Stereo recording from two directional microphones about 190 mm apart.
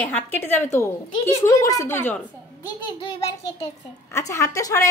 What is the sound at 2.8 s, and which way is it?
Speech, 30° left (ahead or behind).